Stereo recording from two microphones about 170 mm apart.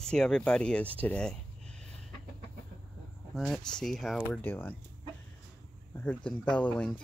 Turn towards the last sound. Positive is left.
turn(degrees=5)  # may be behind; listen again after turning